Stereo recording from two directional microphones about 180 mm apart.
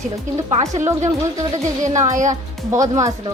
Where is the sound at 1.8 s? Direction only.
40° right (ahead or behind).